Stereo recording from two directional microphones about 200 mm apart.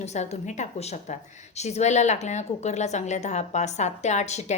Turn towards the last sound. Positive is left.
turn(degrees=35)  # may be behind; listen again after turning